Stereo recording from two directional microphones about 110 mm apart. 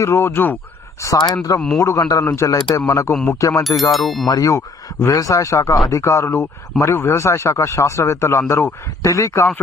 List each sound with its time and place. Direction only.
0.0 s a man's voice: 25° left (ahead or behind)
1.0 s a man's voice: 30° left (ahead or behind)
3.9 s speech: centre (ahead or behind)
4.3 s a man's voice: 30° left (ahead or behind)